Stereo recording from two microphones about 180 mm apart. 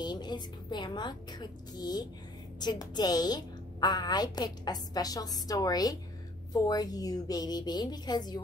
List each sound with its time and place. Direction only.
0.0 s a woman's voice: 25° left (ahead or behind)